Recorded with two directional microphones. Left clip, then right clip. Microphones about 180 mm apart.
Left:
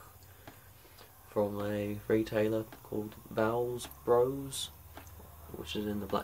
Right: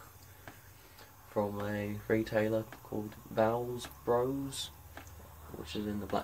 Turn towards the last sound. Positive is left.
turn(degrees=15)  # may be behind; listen again after turning